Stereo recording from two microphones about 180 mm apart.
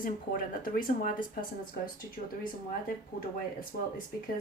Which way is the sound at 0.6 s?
50° left (ahead or behind).